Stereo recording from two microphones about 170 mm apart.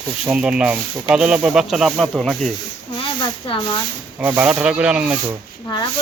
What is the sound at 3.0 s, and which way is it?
Speech, 30° left (ahead or behind).